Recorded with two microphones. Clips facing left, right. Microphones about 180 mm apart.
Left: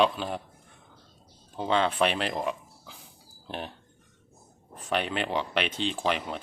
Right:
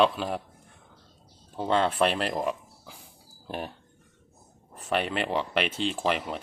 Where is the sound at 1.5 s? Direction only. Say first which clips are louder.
Right 1 dB; centre (ahead or behind).